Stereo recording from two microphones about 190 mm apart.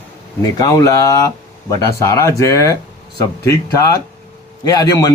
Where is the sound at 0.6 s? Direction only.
15° left (ahead or behind).